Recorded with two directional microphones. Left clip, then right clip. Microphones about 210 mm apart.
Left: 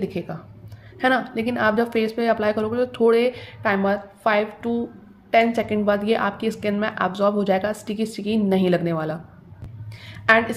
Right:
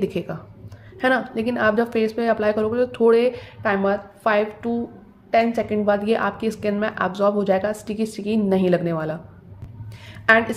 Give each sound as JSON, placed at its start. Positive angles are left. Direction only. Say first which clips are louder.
{"t": 0.0, "sound": "speech", "louder": "right 3 dB", "side_deg": -15}
{"t": 0.9, "sound": "speech", "louder": "even", "side_deg": -5}
{"t": 10.0, "sound": "a sound", "louder": "right 1 dB", "side_deg": -5}